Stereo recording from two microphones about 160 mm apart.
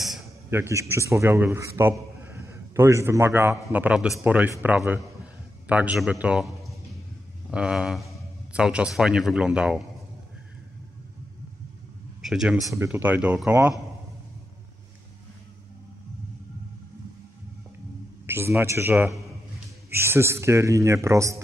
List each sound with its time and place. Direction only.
0.5 s a man's voice: 15° right (ahead or behind)
12.2 s speech: 5° right (ahead or behind)
12.7 s speech: 15° right (ahead or behind)
18.2 s a sound: 15° right (ahead or behind)
18.6 s speech: 15° right (ahead or behind)